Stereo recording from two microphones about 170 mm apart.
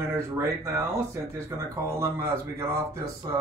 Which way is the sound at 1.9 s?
15° right (ahead or behind).